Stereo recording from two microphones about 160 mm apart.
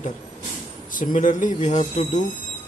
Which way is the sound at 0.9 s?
55° left (ahead or behind).